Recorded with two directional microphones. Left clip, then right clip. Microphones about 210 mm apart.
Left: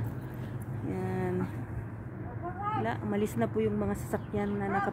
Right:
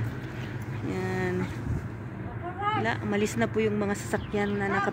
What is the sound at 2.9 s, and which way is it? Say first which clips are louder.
Speech: right 4 dB; 5° left (ahead or behind).